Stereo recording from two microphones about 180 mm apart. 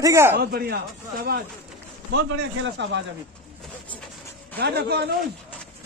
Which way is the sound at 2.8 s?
80° right.